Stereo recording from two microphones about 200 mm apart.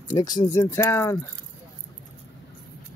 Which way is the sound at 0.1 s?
20° left (ahead or behind).